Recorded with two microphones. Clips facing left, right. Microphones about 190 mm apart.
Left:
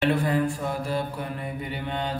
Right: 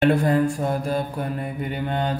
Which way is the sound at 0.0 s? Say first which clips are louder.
Right 5 dB; 45° right (ahead or behind).